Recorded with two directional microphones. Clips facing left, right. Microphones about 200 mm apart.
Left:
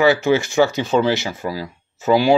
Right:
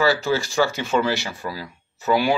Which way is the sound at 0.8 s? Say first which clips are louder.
Left 4 dB; 35° left (ahead or behind).